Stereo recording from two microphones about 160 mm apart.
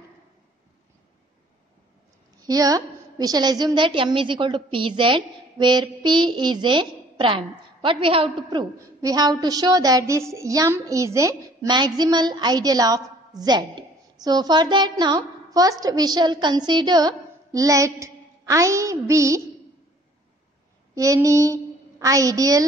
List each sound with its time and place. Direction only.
2.4 s a woman's voice: 25° right (ahead or behind)
20.9 s a woman's voice: 20° right (ahead or behind)